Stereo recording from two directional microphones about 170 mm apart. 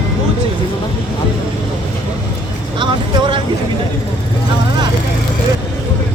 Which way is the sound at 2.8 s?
30° right (ahead or behind).